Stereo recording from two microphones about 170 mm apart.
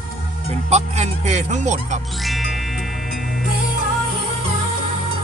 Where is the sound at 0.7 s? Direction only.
45° right (ahead or behind).